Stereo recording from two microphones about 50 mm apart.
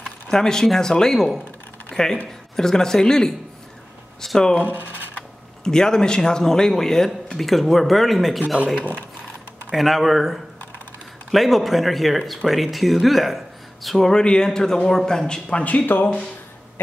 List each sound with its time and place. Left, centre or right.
0.3 s speech: centre
1.9 s a sound: centre
2.5 s speech: centre
5.6 s a man's voice: centre
8.7 s speech: left
9.7 s a man's voice: centre
15.6 s speech: left